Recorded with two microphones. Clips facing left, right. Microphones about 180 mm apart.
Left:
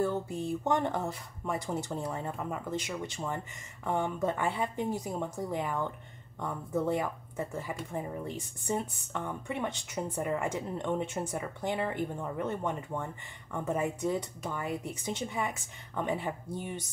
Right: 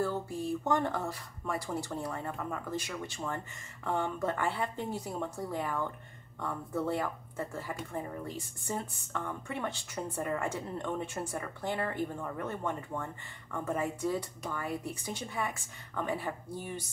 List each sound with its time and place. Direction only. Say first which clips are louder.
0.0 s a woman's voice: left 2 dB; 20° left (ahead or behind)